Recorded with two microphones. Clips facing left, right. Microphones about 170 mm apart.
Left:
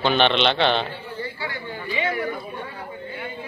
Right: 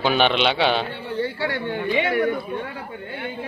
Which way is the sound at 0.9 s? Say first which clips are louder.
Right 6 dB; 65° right (ahead or behind).